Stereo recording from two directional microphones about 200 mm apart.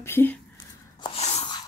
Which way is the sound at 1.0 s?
30° left (ahead or behind).